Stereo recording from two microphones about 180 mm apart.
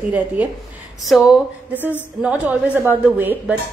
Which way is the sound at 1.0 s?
Centre (ahead or behind).